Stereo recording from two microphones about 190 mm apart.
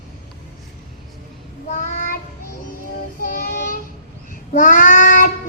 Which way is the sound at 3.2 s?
45° left (ahead or behind).